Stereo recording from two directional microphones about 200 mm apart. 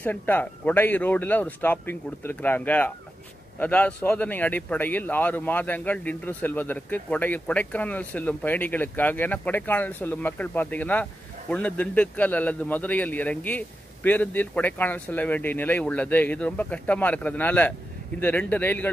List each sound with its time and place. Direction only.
0.0 s a man's voice: 10° left (ahead or behind)